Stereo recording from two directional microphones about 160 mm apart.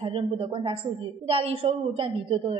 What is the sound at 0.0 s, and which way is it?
A woman's voice, 35° right (ahead or behind).